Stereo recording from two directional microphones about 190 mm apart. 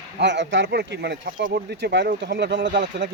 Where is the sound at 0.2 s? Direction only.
65° right (ahead or behind).